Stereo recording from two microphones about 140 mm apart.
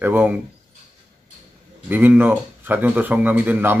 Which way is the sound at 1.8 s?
10° right (ahead or behind).